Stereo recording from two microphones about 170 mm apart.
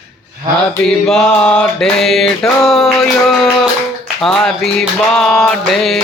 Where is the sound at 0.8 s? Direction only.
5° left (ahead or behind).